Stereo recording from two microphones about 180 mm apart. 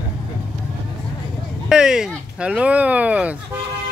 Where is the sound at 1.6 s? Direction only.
5° right (ahead or behind).